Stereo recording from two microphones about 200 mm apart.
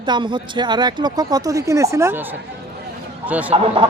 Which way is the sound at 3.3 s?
5° right (ahead or behind).